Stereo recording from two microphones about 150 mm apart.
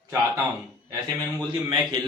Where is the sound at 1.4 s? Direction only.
30° right (ahead or behind).